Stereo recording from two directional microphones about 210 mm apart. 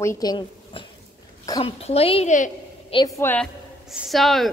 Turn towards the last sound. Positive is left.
turn(degrees=0)  # may be behind; listen again after turning